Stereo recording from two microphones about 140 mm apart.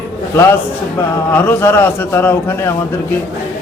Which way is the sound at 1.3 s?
15° left (ahead or behind).